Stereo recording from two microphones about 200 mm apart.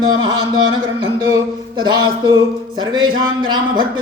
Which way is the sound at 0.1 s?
20° right (ahead or behind).